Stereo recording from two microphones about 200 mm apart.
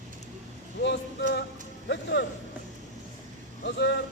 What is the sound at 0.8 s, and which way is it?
Music, 60° left (ahead or behind).